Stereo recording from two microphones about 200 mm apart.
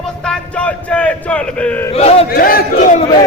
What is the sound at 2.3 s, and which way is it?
Speech, 50° left (ahead or behind).